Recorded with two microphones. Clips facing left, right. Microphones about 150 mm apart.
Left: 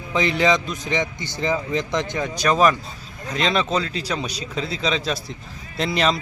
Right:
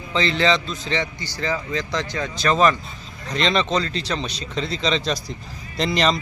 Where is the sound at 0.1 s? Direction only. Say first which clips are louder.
Left 1 dB; 15° left (ahead or behind).